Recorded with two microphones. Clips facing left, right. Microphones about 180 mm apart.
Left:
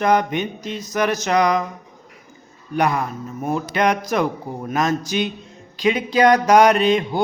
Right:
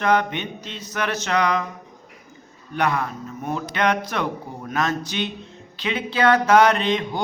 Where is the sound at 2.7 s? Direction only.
10° left (ahead or behind).